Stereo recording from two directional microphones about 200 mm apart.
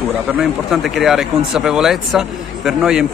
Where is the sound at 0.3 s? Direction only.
Centre (ahead or behind).